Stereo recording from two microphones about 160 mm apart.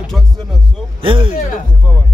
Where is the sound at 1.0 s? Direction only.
35° right (ahead or behind).